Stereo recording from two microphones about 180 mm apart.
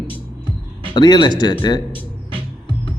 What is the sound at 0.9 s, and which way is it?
Speech, 25° left (ahead or behind).